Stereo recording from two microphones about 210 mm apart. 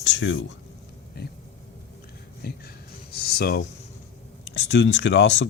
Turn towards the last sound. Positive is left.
turn(degrees=60)  # may be behind; listen again after turning